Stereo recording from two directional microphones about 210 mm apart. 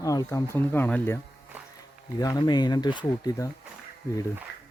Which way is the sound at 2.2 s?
20° left (ahead or behind).